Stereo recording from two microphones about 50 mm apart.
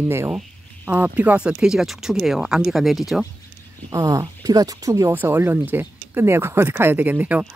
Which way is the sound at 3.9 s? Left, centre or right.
Right.